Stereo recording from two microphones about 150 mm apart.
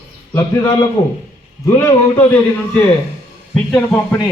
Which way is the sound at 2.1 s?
10° left (ahead or behind).